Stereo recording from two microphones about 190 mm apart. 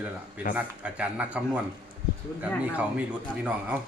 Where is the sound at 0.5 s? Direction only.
5° right (ahead or behind).